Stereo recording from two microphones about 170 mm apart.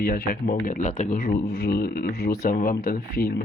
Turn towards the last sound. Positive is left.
turn(degrees=60)  # may be behind; listen again after turning